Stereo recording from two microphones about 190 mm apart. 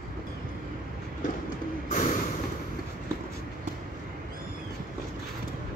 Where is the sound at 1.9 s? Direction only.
45° left (ahead or behind).